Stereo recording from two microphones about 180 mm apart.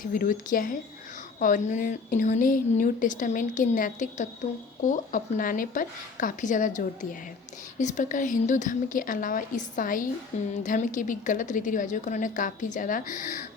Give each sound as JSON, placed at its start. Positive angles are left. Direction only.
{"t": 0.0, "sound": "speech", "side_deg": 50}